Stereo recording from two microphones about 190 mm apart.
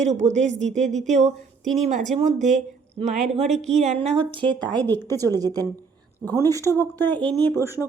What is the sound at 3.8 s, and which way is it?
Speech, 35° right (ahead or behind).